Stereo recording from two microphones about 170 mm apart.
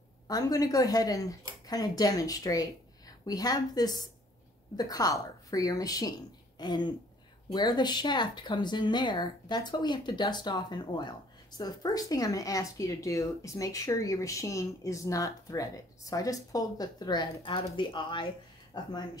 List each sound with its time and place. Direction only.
0.3 s a woman's voice: 20° left (ahead or behind)